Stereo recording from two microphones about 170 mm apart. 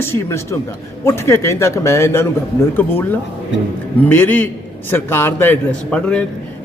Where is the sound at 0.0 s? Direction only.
15° left (ahead or behind).